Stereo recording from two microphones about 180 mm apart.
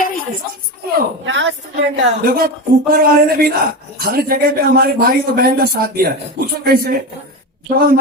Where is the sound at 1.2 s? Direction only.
90° right.